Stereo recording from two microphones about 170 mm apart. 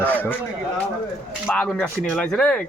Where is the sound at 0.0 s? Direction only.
10° left (ahead or behind).